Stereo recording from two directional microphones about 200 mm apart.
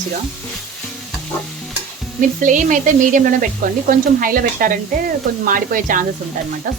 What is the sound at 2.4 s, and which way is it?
Speech, 40° right (ahead or behind).